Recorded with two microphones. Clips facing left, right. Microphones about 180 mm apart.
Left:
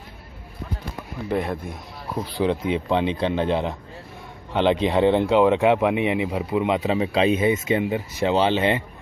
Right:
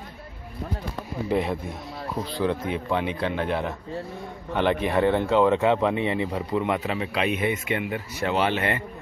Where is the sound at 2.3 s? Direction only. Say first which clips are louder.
Left 4 dB; 15° left (ahead or behind).